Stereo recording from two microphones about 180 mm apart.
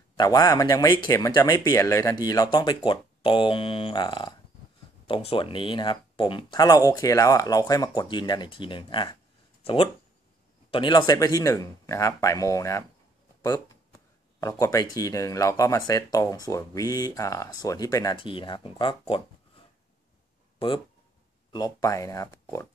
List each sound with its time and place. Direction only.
0.1 s speech: 20° left (ahead or behind)
10.7 s speech: 25° left (ahead or behind)
20.5 s speech: 30° left (ahead or behind)